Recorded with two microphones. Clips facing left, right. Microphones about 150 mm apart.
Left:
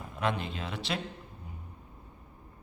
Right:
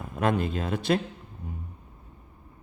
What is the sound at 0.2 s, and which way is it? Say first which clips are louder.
Speech: right 7 dB; 50° right (ahead or behind).